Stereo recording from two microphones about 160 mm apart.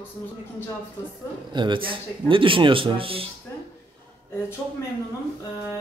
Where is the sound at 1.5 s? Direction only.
30° right (ahead or behind).